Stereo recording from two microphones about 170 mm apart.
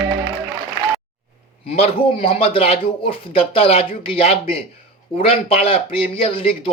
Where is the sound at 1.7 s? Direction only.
35° left (ahead or behind).